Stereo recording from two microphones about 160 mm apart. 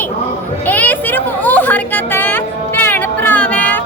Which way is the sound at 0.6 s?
10° left (ahead or behind).